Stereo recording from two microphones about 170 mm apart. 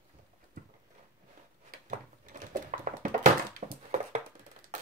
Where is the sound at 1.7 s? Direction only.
50° right (ahead or behind).